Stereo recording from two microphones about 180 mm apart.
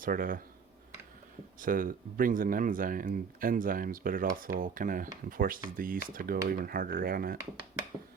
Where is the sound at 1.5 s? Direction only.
50° right (ahead or behind).